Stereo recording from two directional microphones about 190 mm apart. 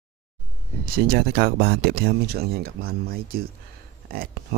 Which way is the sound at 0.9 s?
55° right (ahead or behind).